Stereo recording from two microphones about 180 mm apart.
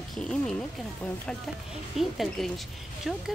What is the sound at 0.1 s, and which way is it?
Speech, 5° left (ahead or behind).